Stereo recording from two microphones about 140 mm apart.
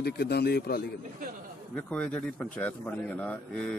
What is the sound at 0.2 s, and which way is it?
Speech, 90° left.